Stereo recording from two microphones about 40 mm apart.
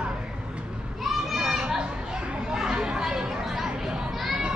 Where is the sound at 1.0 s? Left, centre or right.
Centre.